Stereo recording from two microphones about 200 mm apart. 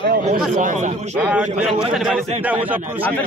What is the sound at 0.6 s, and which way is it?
Speech, 40° right (ahead or behind).